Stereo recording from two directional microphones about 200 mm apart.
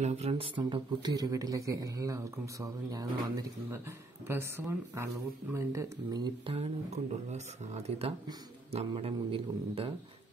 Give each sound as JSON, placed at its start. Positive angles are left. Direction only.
{"t": 0.0, "sound": "speech", "side_deg": -30}
{"t": 6.5, "sound": "speech", "side_deg": -35}